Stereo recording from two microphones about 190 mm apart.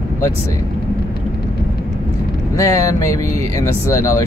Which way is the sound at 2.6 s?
15° left (ahead or behind).